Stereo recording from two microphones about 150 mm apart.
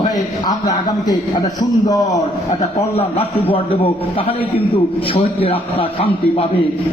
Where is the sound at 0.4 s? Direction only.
25° left (ahead or behind).